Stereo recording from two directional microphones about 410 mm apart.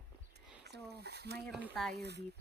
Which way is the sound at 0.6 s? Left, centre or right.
Right.